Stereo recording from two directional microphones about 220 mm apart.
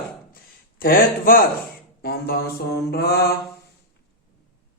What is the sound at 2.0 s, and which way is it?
A man's voice, 45° left (ahead or behind).